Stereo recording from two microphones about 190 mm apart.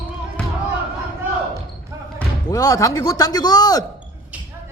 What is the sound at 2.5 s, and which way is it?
A man's voice, 15° left (ahead or behind).